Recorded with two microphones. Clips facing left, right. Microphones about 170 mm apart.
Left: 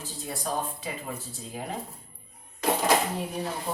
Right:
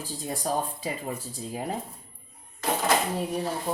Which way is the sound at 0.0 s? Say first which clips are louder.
Right 3 dB; 35° right (ahead or behind).